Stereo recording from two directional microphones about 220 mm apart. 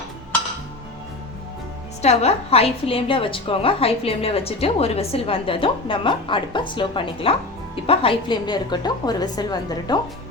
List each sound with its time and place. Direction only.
2.0 s a woman's voice: 30° left (ahead or behind)